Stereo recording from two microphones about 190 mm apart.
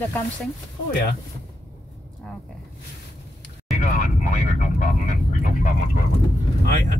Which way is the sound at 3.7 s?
40° left (ahead or behind).